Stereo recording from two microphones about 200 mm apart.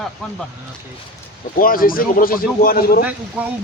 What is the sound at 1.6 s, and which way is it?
Speech, 45° left (ahead or behind).